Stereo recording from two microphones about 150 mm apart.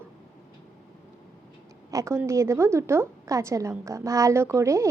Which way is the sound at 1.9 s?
20° right (ahead or behind).